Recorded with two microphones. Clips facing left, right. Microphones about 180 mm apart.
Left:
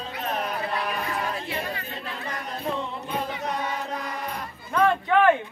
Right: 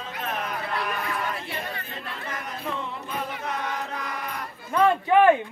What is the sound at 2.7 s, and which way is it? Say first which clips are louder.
Music: left 3 dB; 35° left (ahead or behind).